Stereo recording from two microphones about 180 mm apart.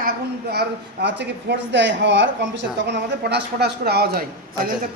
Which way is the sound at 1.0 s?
75° right (ahead or behind).